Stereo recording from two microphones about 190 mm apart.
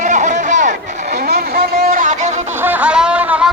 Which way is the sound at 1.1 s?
55° right (ahead or behind).